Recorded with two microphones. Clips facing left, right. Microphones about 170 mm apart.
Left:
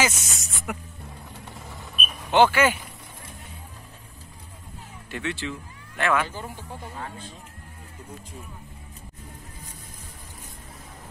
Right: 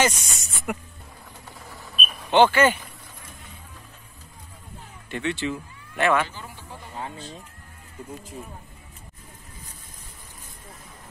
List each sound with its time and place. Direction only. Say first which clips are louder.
0.0 s speech: right 3 dB; centre (ahead or behind)
1.7 s a sound: right 2 dB; 10° left (ahead or behind)
5.1 s speech: right 4 dB; centre (ahead or behind)